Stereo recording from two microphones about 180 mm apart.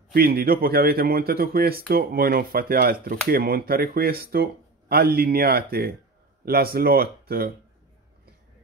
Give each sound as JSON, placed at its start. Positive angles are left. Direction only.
{"t": 0.1, "sound": "speech", "side_deg": -55}